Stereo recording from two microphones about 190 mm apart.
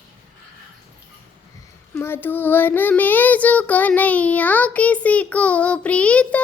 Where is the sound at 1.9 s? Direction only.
10° left (ahead or behind).